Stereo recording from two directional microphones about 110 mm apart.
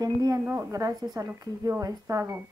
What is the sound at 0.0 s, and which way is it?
Speech, 35° right (ahead or behind).